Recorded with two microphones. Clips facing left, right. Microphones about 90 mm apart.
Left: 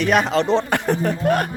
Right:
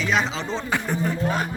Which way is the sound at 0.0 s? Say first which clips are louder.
Left 6 dB; 60° left (ahead or behind).